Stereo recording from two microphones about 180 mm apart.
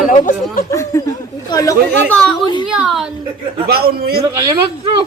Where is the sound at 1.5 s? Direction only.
20° left (ahead or behind).